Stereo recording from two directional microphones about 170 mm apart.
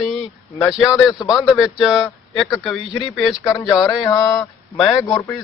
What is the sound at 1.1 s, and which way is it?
Speech, 20° left (ahead or behind).